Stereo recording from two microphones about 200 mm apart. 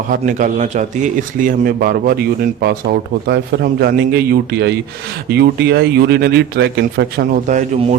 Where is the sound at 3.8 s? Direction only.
50° right (ahead or behind).